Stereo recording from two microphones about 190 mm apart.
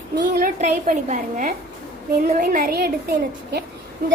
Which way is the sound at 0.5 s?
35° right (ahead or behind).